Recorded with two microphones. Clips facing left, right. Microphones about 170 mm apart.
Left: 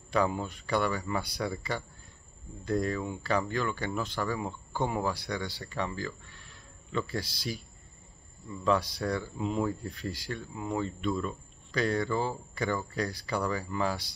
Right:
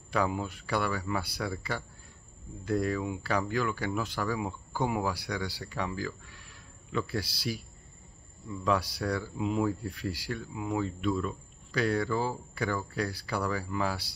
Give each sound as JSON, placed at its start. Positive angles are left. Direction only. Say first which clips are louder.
{"t": 0.1, "sound": "speech", "louder": "left 1 dB", "side_deg": -5}